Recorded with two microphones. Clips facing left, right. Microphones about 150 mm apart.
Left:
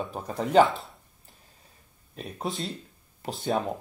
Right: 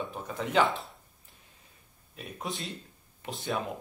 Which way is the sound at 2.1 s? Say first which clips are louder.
Left 5 dB; 35° left (ahead or behind).